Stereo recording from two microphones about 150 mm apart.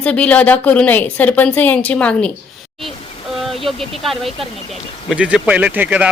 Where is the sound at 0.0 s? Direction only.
10° left (ahead or behind).